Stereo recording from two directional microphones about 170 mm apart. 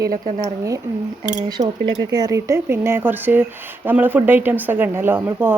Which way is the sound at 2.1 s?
20° right (ahead or behind).